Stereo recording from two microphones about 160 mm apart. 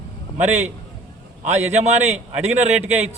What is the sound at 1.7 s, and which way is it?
Speech, 45° right (ahead or behind).